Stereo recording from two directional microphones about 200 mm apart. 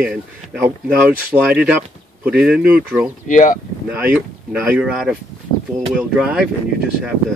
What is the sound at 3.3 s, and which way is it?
Speech, 40° left (ahead or behind).